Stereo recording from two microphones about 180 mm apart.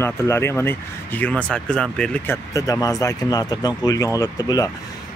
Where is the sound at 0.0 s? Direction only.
15° left (ahead or behind).